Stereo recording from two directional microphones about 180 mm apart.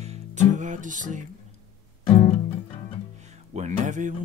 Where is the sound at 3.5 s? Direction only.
40° right (ahead or behind).